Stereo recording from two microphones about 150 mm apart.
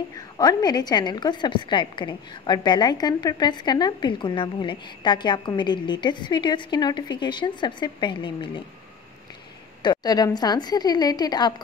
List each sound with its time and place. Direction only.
0.1 s a woman's voice: 25° left (ahead or behind)
9.8 s a woman's voice: 30° left (ahead or behind)